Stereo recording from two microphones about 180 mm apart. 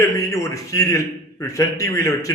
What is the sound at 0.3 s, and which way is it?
A man's voice, 20° left (ahead or behind).